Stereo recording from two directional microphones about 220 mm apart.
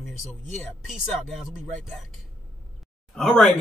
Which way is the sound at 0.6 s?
Centre (ahead or behind).